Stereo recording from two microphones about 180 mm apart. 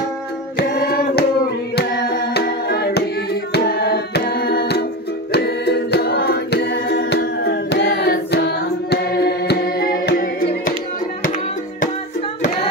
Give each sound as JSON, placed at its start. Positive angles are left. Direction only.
{"t": 0.6, "sound": "music", "side_deg": 55}